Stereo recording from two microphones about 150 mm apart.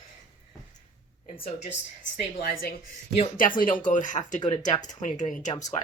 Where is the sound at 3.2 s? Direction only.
65° left (ahead or behind).